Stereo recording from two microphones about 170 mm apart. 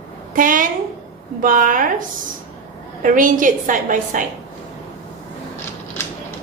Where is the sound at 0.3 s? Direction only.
50° right (ahead or behind).